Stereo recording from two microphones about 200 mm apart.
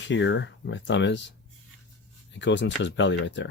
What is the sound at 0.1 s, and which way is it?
Speech, 65° left (ahead or behind).